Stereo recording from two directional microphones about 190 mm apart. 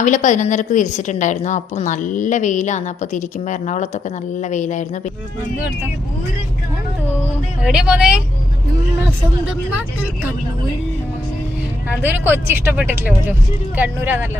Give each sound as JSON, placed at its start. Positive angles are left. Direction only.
{"t": 0.0, "sound": "a woman's voice", "side_deg": 40}
{"t": 7.6, "sound": "speech", "side_deg": -5}
{"t": 12.0, "sound": "speech", "side_deg": -10}